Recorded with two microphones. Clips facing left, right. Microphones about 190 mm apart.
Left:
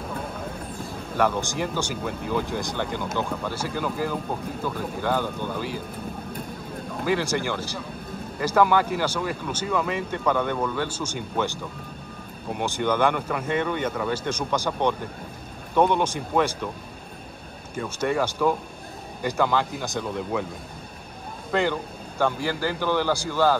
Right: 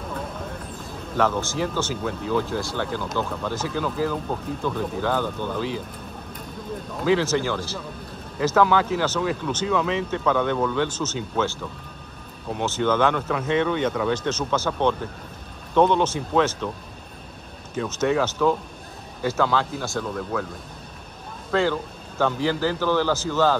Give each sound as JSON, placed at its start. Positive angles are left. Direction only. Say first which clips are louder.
{"t": 1.1, "sound": "speech", "louder": "right 1 dB", "side_deg": 15}
{"t": 7.1, "sound": "speech", "louder": "right 4 dB", "side_deg": 10}
{"t": 12.4, "sound": "speech", "louder": "right 2 dB", "side_deg": 10}
{"t": 17.8, "sound": "speech", "louder": "right 2 dB", "side_deg": 10}
{"t": 22.2, "sound": "speech", "louder": "right 2 dB", "side_deg": 10}